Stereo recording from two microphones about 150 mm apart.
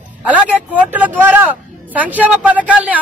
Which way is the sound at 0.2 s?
10° right (ahead or behind).